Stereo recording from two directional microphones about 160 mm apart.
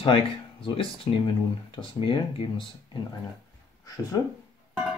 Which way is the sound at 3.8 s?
20° left (ahead or behind).